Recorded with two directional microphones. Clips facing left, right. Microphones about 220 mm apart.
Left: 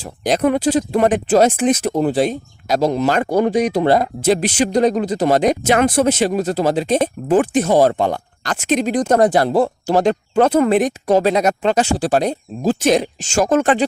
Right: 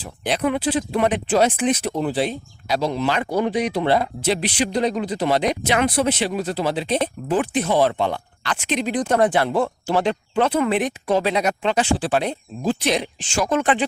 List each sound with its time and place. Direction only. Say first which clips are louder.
0.0 s speech: left 6 dB; 45° left (ahead or behind)